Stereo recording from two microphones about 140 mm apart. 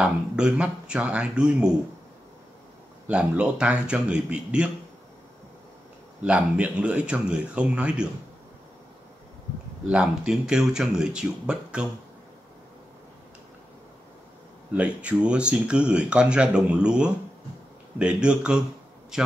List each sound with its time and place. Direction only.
0.0 s speech: 5° right (ahead or behind)
3.1 s speech: 5° right (ahead or behind)
6.2 s speech: 10° right (ahead or behind)
9.8 s speech: 5° right (ahead or behind)
14.7 s a man's voice: 10° right (ahead or behind)